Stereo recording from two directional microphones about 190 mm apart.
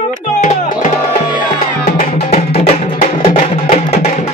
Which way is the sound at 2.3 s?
35° left (ahead or behind).